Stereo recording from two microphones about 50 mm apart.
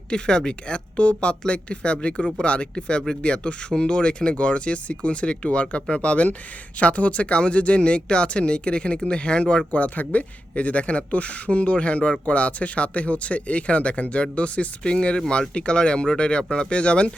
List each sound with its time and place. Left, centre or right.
0.1 s speech: centre